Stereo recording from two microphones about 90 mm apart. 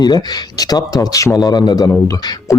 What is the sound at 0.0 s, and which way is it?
Speech, 50° left (ahead or behind).